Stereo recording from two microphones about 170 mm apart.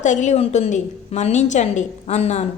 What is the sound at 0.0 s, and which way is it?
A woman's voice, 45° left (ahead or behind).